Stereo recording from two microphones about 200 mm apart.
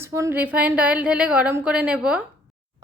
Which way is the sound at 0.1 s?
15° right (ahead or behind).